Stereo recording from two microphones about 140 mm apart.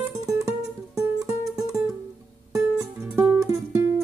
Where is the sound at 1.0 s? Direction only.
20° right (ahead or behind).